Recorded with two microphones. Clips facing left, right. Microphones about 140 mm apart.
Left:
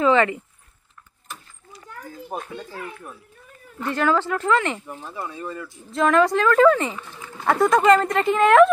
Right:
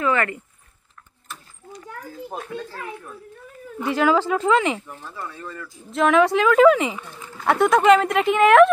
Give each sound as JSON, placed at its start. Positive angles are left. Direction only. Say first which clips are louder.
{"t": 0.0, "sound": "speech", "louder": "left 4 dB", "side_deg": 20}
{"t": 2.3, "sound": "speech", "louder": "even", "side_deg": 0}
{"t": 3.8, "sound": "speech", "louder": "right 2 dB", "side_deg": -10}
{"t": 4.8, "sound": "speech", "louder": "left 2 dB", "side_deg": 15}
{"t": 5.9, "sound": "speech", "louder": "right 1 dB", "side_deg": 0}